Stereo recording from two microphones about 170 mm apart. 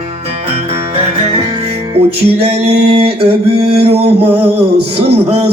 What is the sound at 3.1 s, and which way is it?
Music, 35° right (ahead or behind).